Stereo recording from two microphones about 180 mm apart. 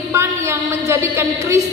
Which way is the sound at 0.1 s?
15° right (ahead or behind).